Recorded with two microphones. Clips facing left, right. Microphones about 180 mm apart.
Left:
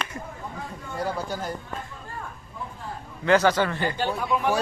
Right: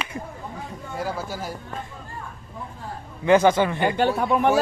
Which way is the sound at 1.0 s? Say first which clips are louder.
Even; 5° right (ahead or behind).